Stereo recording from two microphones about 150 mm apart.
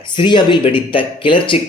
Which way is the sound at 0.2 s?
30° left (ahead or behind).